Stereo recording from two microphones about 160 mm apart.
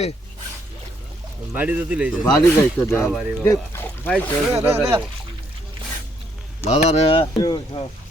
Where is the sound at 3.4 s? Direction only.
15° left (ahead or behind).